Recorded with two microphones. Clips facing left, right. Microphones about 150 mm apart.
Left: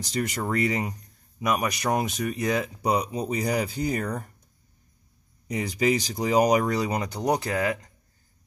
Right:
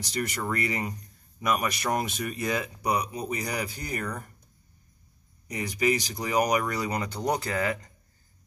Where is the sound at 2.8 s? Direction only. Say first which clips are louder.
Left 3 dB; 30° left (ahead or behind).